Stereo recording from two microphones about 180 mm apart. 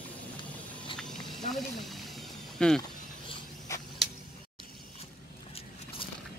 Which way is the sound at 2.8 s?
20° left (ahead or behind).